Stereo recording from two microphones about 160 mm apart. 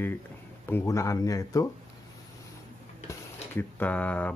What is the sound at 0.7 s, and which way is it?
Speech, 15° left (ahead or behind).